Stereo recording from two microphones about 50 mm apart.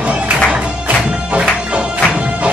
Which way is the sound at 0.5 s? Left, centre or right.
Right.